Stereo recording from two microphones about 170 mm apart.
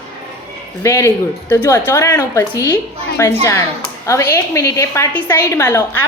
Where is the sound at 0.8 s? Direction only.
15° left (ahead or behind).